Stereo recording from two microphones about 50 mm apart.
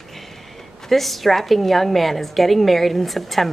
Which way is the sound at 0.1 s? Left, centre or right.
Centre.